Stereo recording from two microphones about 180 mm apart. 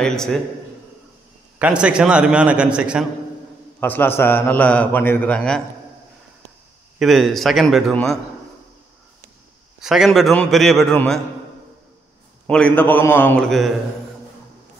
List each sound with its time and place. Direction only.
0.0 s a man's voice: 5° left (ahead or behind)
1.6 s a man's voice: 5° right (ahead or behind)
3.8 s a man's voice: 10° left (ahead or behind)
7.0 s a man's voice: centre (ahead or behind)
9.8 s a man's voice: centre (ahead or behind)
12.4 s a man's voice: 5° left (ahead or behind)